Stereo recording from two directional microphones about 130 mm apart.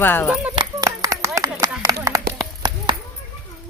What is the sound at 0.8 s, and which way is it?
Clapping, 25° right (ahead or behind).